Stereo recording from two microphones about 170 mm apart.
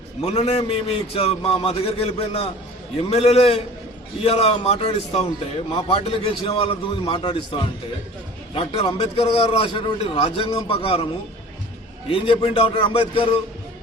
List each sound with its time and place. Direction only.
0.2 s a man's voice: 40° left (ahead or behind)
12.0 s a man's voice: 30° left (ahead or behind)